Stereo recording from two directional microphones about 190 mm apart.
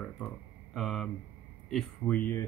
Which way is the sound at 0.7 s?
Centre (ahead or behind).